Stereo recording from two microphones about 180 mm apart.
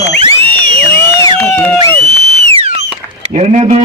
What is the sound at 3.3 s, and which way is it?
Speech, 40° right (ahead or behind).